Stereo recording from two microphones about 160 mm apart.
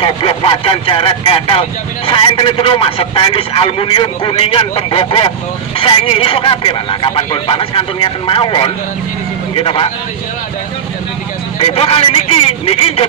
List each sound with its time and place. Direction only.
0.0 s a man's voice: 30° left (ahead or behind)
11.6 s a man's voice: 35° left (ahead or behind)